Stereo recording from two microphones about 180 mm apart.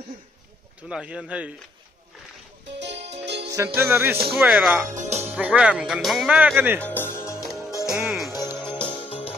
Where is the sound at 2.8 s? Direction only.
75° right (ahead or behind).